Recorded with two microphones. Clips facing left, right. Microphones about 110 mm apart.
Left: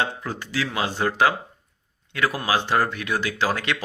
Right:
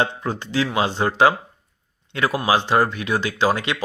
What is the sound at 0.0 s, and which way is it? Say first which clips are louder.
Speech: right 4 dB; 25° right (ahead or behind).